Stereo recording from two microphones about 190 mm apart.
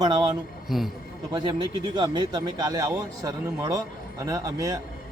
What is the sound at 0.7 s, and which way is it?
Speech, centre (ahead or behind).